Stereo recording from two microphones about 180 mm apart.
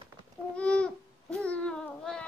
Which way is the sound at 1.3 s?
5° left (ahead or behind).